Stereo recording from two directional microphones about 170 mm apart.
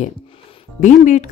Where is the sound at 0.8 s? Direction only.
45° left (ahead or behind).